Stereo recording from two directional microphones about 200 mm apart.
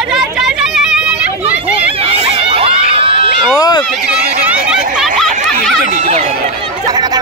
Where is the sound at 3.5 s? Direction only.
20° left (ahead or behind).